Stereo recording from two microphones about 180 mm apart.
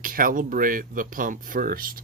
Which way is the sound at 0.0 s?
50° right (ahead or behind).